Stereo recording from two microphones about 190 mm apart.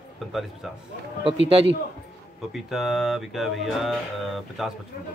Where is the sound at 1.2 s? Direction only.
30° right (ahead or behind).